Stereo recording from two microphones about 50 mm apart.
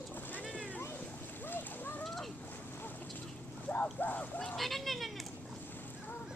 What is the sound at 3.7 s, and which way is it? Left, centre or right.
Boat, left.